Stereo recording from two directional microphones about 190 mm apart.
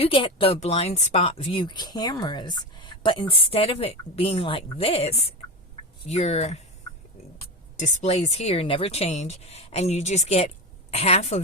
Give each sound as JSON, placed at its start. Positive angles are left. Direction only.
{"t": 0.0, "sound": "speech", "side_deg": 30}
{"t": 7.8, "sound": "speech", "side_deg": 35}